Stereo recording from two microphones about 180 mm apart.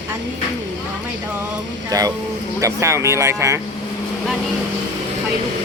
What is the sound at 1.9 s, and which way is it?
Speech, 20° right (ahead or behind).